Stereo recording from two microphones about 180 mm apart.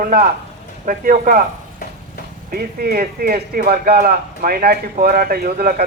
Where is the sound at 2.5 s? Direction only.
55° right (ahead or behind).